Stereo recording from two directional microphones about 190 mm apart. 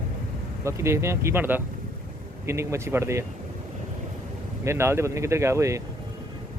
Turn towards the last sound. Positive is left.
turn(degrees=-15)  # may be behind; listen again after turning